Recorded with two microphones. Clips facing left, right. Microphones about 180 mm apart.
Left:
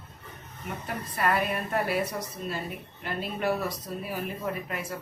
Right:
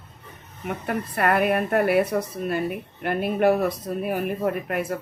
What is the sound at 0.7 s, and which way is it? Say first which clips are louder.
Speech: right 8 dB; 60° right (ahead or behind).